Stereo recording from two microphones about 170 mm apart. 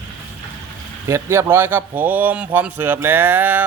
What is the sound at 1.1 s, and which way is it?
Speech, 15° right (ahead or behind).